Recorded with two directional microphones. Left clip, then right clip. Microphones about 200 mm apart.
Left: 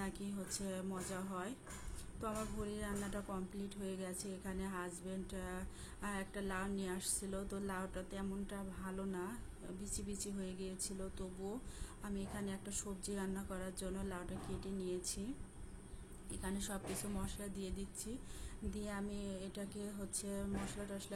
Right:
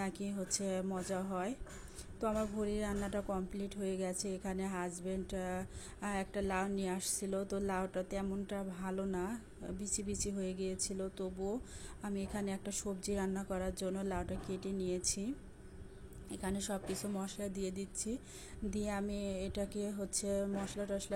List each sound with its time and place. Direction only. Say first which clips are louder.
0.0 s a woman's voice: right 5 dB; 30° right (ahead or behind)
16.3 s a woman's voice: right 6 dB; 30° right (ahead or behind)